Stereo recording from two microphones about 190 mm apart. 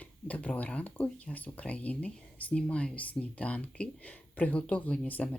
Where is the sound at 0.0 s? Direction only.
10° left (ahead or behind).